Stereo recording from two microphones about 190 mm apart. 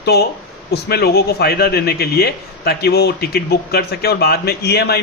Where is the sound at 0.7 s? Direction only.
55° left (ahead or behind).